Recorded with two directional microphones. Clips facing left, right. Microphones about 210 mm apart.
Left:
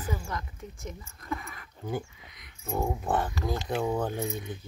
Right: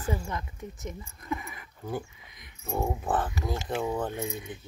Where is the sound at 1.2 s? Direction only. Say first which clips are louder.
Right 1 dB; 20° right (ahead or behind).